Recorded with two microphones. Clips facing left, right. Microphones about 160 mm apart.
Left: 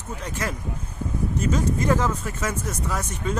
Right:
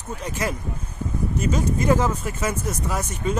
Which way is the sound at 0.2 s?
15° right (ahead or behind).